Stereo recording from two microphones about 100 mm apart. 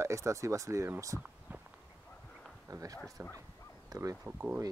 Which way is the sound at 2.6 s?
35° right (ahead or behind).